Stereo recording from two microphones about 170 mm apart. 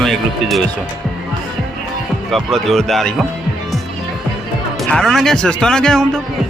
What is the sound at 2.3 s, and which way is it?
Speech, centre (ahead or behind).